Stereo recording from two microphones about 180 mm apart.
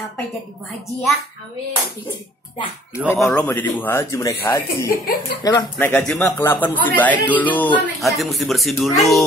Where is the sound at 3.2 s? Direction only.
10° left (ahead or behind).